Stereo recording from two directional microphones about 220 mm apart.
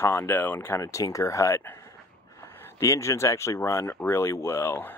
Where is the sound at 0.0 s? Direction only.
10° left (ahead or behind).